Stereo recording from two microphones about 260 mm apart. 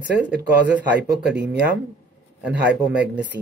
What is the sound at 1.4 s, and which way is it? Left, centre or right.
Speech, right.